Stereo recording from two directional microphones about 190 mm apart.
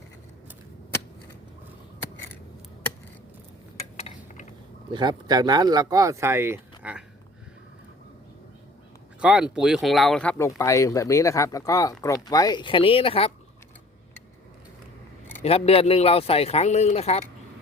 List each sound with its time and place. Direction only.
3.9 s a sound: 35° left (ahead or behind)
4.9 s speech: 20° right (ahead or behind)
9.2 s speech: 5° right (ahead or behind); by 13.3 s 30° left (ahead or behind)
15.4 s speech: 30° left (ahead or behind)